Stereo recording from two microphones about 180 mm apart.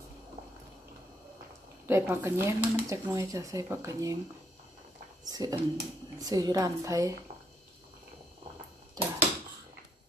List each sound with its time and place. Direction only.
1.9 s speech: 15° right (ahead or behind)
5.2 s a woman's voice: 20° right (ahead or behind)
9.0 s a sound: 20° right (ahead or behind)